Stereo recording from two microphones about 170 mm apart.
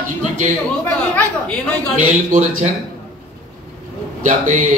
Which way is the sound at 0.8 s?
10° left (ahead or behind).